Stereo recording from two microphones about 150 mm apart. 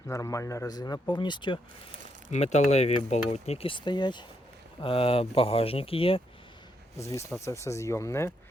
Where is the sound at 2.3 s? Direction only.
50° left (ahead or behind).